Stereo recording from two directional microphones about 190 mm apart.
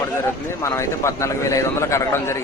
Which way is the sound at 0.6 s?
15° left (ahead or behind).